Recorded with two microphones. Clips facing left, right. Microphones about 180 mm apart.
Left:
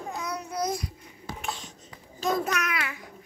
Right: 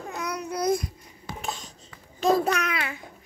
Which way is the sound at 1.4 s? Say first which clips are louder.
Right 2 dB; 35° right (ahead or behind).